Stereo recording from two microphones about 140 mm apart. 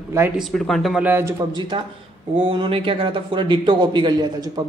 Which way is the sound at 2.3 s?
40° right (ahead or behind).